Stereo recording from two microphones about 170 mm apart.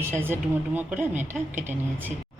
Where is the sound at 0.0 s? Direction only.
15° right (ahead or behind).